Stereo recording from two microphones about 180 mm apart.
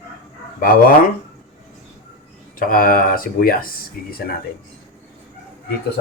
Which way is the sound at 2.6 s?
50° left (ahead or behind).